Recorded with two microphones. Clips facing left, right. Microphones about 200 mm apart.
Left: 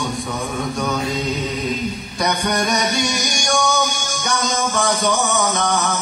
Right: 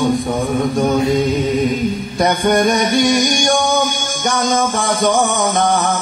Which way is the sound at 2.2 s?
50° right (ahead or behind).